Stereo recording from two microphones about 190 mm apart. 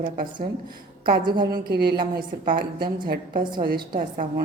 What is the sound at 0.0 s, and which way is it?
Speech, 45° right (ahead or behind).